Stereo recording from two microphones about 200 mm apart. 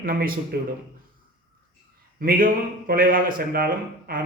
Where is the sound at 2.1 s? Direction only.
45° right (ahead or behind).